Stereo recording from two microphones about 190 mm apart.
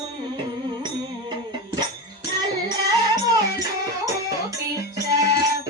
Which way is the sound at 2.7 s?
20° right (ahead or behind).